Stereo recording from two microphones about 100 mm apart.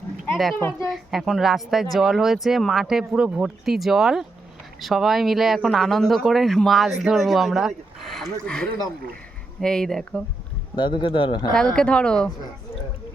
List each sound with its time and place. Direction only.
0.8 s speech: centre (ahead or behind)
10.8 s a man's voice: 50° left (ahead or behind)
11.5 s speech: 10° left (ahead or behind)